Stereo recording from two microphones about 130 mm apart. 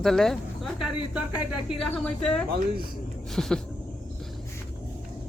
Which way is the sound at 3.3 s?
5° left (ahead or behind).